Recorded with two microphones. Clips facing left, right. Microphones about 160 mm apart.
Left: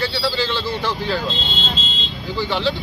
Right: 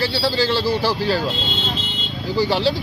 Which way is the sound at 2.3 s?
35° right (ahead or behind).